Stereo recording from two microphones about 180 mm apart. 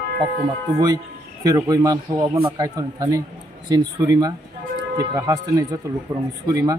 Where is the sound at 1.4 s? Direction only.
20° right (ahead or behind).